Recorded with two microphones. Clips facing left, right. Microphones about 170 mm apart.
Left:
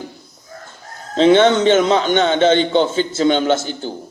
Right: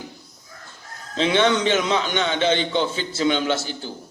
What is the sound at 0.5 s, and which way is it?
Speech, 45° left (ahead or behind).